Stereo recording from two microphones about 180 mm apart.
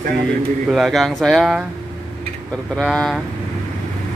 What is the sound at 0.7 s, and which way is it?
Speech, centre (ahead or behind).